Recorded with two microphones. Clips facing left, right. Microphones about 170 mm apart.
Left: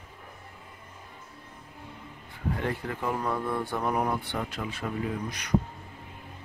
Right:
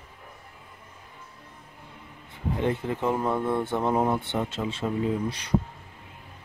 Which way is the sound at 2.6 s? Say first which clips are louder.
Right 8 dB; 20° right (ahead or behind).